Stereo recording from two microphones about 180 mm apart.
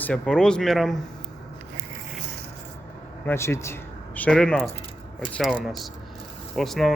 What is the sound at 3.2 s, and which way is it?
A man's voice, 15° left (ahead or behind).